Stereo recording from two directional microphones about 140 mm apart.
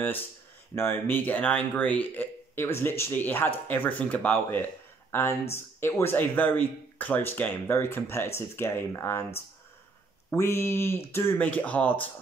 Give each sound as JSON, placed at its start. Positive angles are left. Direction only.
{"t": 0.7, "sound": "speech", "side_deg": 15}